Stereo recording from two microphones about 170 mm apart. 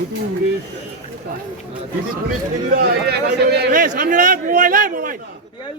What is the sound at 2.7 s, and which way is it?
Speech, 65° right (ahead or behind).